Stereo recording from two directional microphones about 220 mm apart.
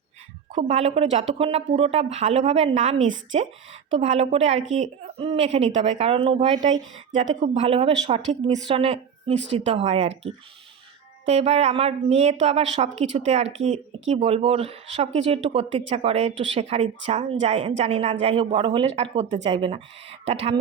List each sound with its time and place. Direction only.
0.5 s speech: 30° right (ahead or behind)
11.3 s speech: 30° right (ahead or behind)